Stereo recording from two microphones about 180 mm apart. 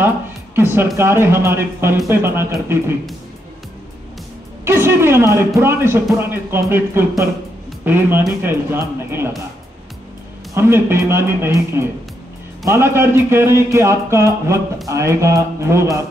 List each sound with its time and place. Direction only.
0.6 s a man's voice: 10° right (ahead or behind)
4.6 s a man's voice: 15° right (ahead or behind)
10.5 s a man's voice: 15° right (ahead or behind)